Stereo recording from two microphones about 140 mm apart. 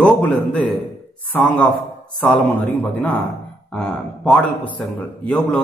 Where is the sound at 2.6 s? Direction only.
10° left (ahead or behind).